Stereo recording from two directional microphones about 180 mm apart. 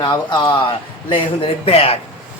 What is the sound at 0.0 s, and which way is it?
Speech, 25° left (ahead or behind).